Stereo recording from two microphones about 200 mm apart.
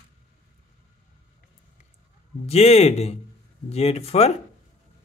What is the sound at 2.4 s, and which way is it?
Speech, 30° left (ahead or behind).